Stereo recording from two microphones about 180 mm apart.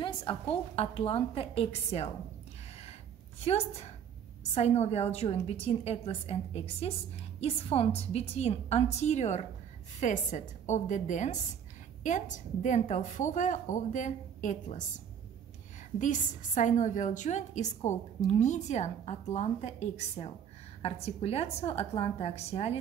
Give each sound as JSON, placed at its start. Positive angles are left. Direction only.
{"t": 0.0, "sound": "a woman's voice", "side_deg": 30}
{"t": 3.4, "sound": "a woman's voice", "side_deg": 35}
{"t": 16.0, "sound": "a woman's voice", "side_deg": 45}